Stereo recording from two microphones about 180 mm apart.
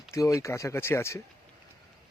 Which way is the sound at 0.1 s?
15° left (ahead or behind).